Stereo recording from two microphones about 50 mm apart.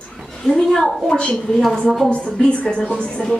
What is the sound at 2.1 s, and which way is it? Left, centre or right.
Speech, left.